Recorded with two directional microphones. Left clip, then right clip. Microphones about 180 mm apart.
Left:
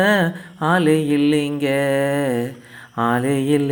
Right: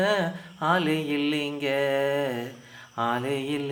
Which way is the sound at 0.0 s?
35° left (ahead or behind).